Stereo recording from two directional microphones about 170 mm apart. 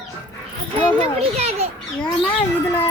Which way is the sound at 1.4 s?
40° right (ahead or behind).